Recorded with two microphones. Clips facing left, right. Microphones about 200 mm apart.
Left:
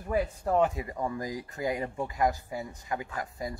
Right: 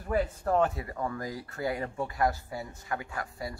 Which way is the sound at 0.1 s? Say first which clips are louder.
Even; 15° left (ahead or behind).